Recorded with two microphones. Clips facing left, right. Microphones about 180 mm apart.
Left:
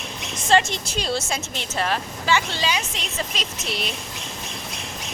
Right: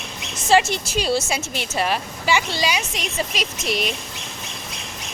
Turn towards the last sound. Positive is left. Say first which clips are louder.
# right 5 dB
turn(degrees=-15)  # may be behind; listen again after turning